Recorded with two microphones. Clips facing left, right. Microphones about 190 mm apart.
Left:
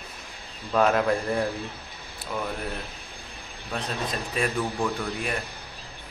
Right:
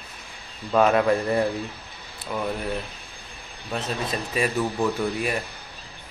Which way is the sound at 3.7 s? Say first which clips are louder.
Right 3 dB; 5° right (ahead or behind).